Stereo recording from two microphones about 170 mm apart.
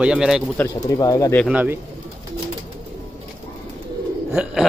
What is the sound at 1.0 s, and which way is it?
Speech, 20° left (ahead or behind).